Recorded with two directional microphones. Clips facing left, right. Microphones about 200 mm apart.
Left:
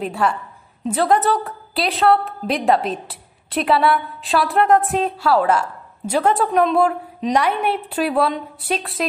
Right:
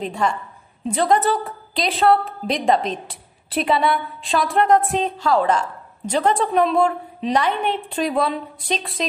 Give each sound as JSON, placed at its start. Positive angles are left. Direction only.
{"t": 0.0, "sound": "a woman's voice", "side_deg": 5}